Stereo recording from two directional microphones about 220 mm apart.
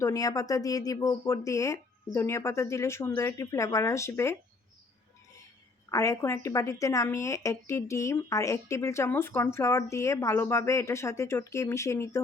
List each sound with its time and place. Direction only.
0.0 s a woman's voice: 15° left (ahead or behind)
5.9 s a woman's voice: 15° left (ahead or behind)